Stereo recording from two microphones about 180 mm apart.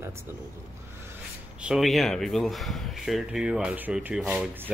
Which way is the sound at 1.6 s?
5° right (ahead or behind).